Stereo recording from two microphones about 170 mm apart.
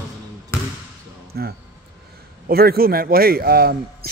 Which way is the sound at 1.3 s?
75° right (ahead or behind).